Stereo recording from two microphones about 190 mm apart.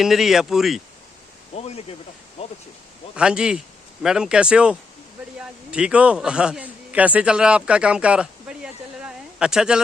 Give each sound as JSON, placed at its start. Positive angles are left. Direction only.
{"t": 0.0, "sound": "speech", "side_deg": 0}
{"t": 1.5, "sound": "speech", "side_deg": 35}
{"t": 3.2, "sound": "a man's voice", "side_deg": -5}